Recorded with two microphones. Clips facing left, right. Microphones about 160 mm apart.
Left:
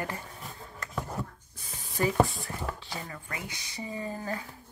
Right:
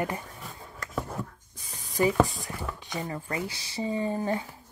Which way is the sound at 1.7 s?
Centre (ahead or behind).